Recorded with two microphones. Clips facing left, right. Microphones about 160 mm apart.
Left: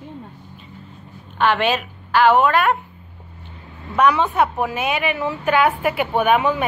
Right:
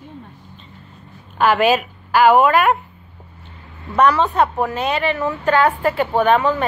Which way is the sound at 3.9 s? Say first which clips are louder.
Right 2 dB; 5° left (ahead or behind).